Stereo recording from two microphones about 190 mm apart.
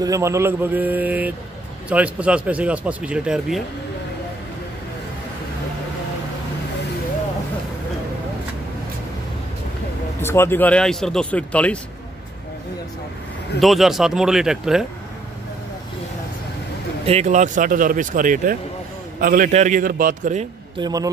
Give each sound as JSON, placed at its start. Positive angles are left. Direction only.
{"t": 0.0, "sound": "speech", "side_deg": -15}
{"t": 10.2, "sound": "speech", "side_deg": 15}
{"t": 13.6, "sound": "speech", "side_deg": 0}
{"t": 17.0, "sound": "speech", "side_deg": -35}
{"t": 20.8, "sound": "a man's voice", "side_deg": -20}